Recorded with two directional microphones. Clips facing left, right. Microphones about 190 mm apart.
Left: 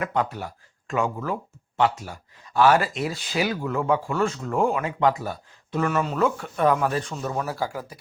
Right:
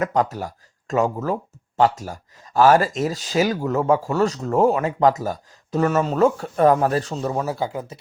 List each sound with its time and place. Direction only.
0.0 s speech: 40° right (ahead or behind); by 7.9 s 20° right (ahead or behind)